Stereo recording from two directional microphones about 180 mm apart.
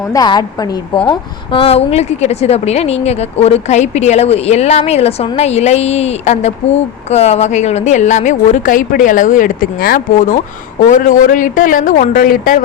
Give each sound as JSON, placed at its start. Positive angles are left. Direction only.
{"t": 0.1, "sound": "a woman's voice", "side_deg": 20}